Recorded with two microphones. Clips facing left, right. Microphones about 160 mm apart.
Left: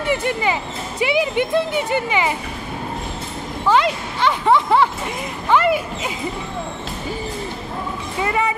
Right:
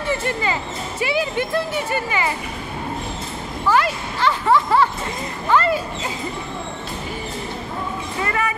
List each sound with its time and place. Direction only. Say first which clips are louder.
0.1 s speech: left 2 dB; 15° left (ahead or behind)
3.6 s speech: left 2 dB; 20° left (ahead or behind)
8.2 s speech: left 4 dB; 20° left (ahead or behind)